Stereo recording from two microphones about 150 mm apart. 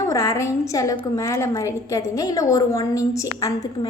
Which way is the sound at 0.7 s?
20° left (ahead or behind).